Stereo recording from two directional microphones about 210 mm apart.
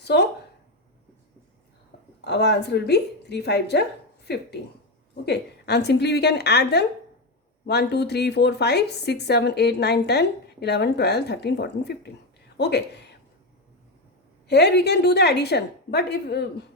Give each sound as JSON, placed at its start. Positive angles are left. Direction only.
{"t": 0.0, "sound": "a woman's voice", "side_deg": 50}
{"t": 2.2, "sound": "a woman's voice", "side_deg": 55}
{"t": 14.4, "sound": "a woman's voice", "side_deg": 55}